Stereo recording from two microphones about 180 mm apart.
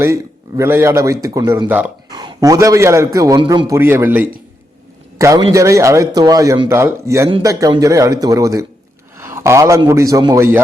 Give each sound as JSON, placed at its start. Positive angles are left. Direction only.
{"t": 0.0, "sound": "a man's voice", "side_deg": -15}
{"t": 3.8, "sound": "a man's voice", "side_deg": -10}